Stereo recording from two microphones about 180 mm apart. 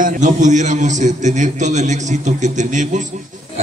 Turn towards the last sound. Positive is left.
turn(degrees=-45)  # may be behind; listen again after turning